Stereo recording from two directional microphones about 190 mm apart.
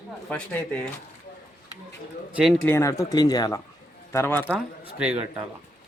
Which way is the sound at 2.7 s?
15° left (ahead or behind).